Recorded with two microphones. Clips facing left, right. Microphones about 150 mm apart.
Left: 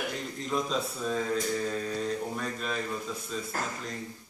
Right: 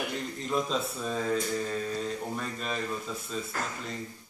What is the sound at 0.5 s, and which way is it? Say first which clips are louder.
Speech: right 1 dB; centre (ahead or behind).